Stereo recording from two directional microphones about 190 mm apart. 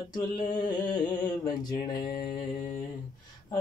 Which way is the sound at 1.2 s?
20° left (ahead or behind).